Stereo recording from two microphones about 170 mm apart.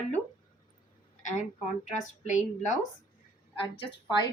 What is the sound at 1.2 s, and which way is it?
Speech, 45° left (ahead or behind).